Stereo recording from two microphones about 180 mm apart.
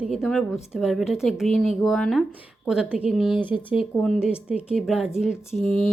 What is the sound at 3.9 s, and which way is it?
Speech, centre (ahead or behind).